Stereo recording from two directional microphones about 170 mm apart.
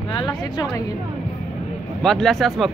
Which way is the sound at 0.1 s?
25° left (ahead or behind).